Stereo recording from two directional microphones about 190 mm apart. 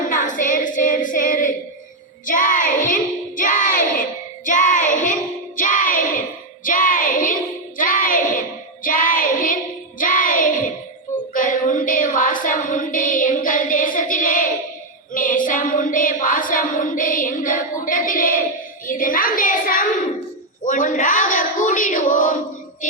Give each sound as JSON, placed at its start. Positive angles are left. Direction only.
{"t": 0.1, "sound": "female singing", "side_deg": 45}
{"t": 2.2, "sound": "child singing", "side_deg": 45}
{"t": 10.0, "sound": "music", "side_deg": 45}
{"t": 11.3, "sound": "a sound", "side_deg": 45}
{"t": 18.9, "sound": "child singing", "side_deg": 45}
{"t": 20.7, "sound": "a sound", "side_deg": 45}